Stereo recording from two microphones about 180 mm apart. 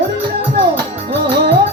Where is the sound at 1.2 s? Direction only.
65° right (ahead or behind).